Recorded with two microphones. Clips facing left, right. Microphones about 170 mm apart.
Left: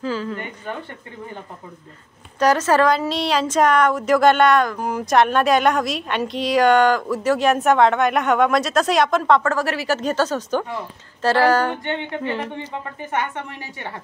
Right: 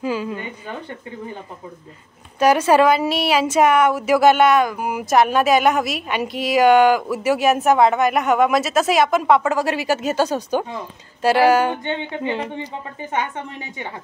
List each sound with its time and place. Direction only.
0.0 s speech: 15° right (ahead or behind)
2.3 s speech: 10° right (ahead or behind)